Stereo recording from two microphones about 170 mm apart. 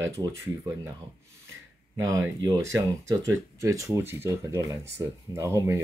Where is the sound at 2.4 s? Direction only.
20° right (ahead or behind).